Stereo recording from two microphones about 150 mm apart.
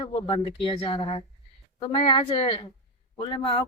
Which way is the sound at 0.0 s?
35° left (ahead or behind).